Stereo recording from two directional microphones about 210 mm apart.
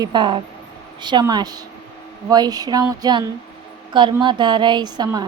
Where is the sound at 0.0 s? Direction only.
20° right (ahead or behind).